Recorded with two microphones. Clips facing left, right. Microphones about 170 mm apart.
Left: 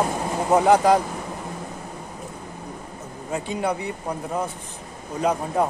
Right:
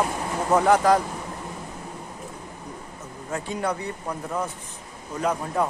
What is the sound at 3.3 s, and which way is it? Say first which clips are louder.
Speech: left 2 dB; 15° left (ahead or behind).